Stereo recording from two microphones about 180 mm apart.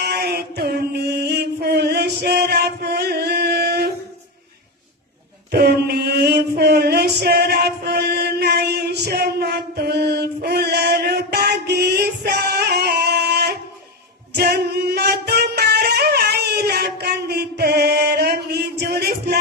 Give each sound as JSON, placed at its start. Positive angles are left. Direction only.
{"t": 0.0, "sound": "mantra", "side_deg": -60}
{"t": 5.5, "sound": "mantra", "side_deg": -60}
{"t": 14.3, "sound": "singing", "side_deg": -60}